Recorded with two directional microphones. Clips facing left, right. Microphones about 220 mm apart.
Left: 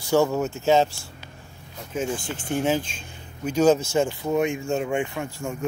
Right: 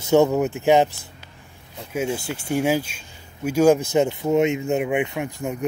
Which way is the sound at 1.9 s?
10° right (ahead or behind).